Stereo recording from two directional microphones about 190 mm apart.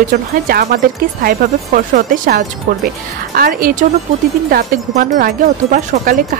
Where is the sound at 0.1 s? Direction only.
50° right (ahead or behind).